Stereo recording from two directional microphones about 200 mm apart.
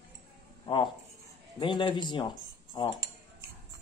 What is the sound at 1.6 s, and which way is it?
Speech, 25° left (ahead or behind).